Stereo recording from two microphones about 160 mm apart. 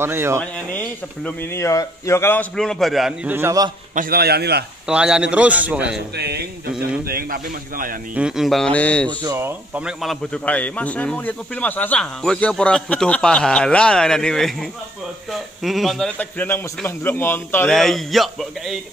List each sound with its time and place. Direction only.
0.0 s a man's voice: 15° right (ahead or behind)
0.4 s speech: 10° left (ahead or behind)
2.5 s a man's voice: 5° left (ahead or behind); by 3.7 s 20° right (ahead or behind)
3.9 s a man's voice: 65° right (ahead or behind); by 4.6 s 90° right
4.8 s a man's voice: 5° right (ahead or behind)
6.1 s speech: 90° right
7.1 s a man's voice: 65° right (ahead or behind)
8.1 s a man's voice: 5° right (ahead or behind)
9.2 s speech: 20° right (ahead or behind)
9.8 s a man's voice: 5° right (ahead or behind)
10.3 s speech: 10° left (ahead or behind)
17.6 s a man's voice: centre (ahead or behind)